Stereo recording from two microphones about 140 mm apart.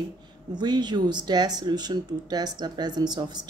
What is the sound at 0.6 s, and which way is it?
Speech, 30° right (ahead or behind).